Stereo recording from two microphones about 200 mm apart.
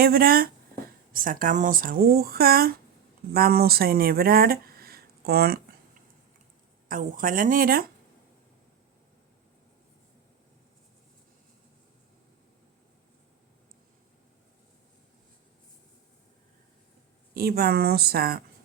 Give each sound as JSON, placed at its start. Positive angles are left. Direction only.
{"t": 0.0, "sound": "speech", "side_deg": -50}
{"t": 6.8, "sound": "speech", "side_deg": -45}
{"t": 17.3, "sound": "speech", "side_deg": -50}